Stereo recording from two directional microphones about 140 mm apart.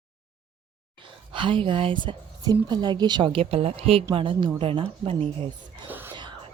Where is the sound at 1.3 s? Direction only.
35° right (ahead or behind).